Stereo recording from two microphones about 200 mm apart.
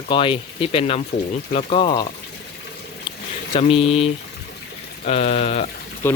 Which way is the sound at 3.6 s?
30° left (ahead or behind).